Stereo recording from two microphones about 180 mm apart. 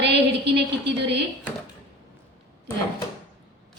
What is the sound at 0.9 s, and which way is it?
Speech, 70° right (ahead or behind).